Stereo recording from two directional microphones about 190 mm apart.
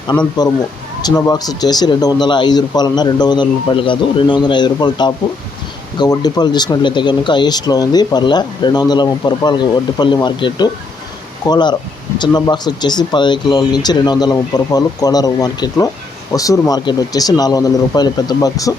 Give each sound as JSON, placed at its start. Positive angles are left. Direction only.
{"t": 0.1, "sound": "speech", "side_deg": 10}